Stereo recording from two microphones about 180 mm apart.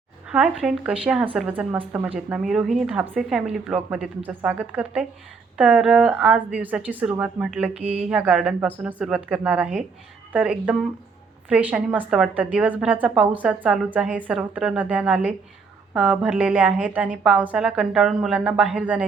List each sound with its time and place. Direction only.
0.3 s a woman's voice: 5° right (ahead or behind)
7.7 s speech: 35° right (ahead or behind)
7.9 s a woman's voice: 5° right (ahead or behind)